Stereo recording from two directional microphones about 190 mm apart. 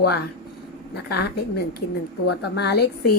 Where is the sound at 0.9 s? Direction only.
55° left (ahead or behind).